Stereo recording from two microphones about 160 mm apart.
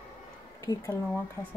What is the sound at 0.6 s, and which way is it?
Speech, 20° left (ahead or behind).